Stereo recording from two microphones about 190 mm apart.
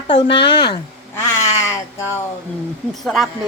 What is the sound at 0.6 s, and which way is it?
Cat, 15° left (ahead or behind).